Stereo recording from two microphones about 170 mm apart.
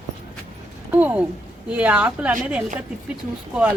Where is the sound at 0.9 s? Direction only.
10° right (ahead or behind).